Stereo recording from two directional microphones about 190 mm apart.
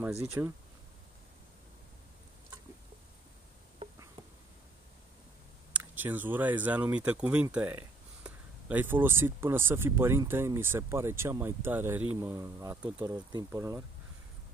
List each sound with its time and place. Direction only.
0.4 s speech: 10° right (ahead or behind)
5.7 s speech: 10° right (ahead or behind)